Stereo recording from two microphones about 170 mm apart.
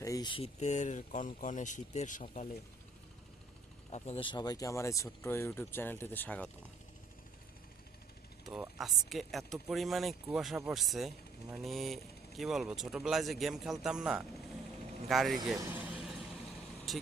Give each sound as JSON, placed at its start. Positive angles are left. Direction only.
{"t": 0.0, "sound": "speech", "side_deg": 20}
{"t": 3.8, "sound": "speech", "side_deg": 40}
{"t": 8.4, "sound": "speech", "side_deg": -5}
{"t": 15.7, "sound": "vehicle", "side_deg": 0}
{"t": 16.9, "sound": "speech", "side_deg": 0}